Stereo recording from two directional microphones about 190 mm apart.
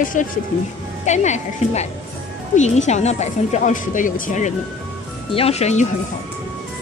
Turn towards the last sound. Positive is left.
turn(degrees=35)  # may be behind; listen again after turning